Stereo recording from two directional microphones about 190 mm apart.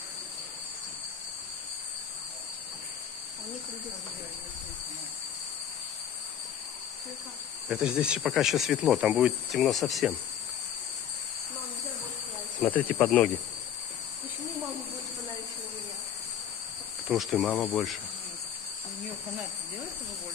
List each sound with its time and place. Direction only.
7.6 s cricket: 5° right (ahead or behind)
12.6 s insect: 10° left (ahead or behind)
17.1 s cricket: centre (ahead or behind)